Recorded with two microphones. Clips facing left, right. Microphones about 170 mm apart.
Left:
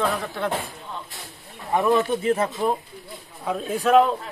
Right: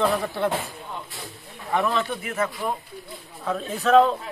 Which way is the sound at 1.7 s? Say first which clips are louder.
Left 4 dB; 15° left (ahead or behind).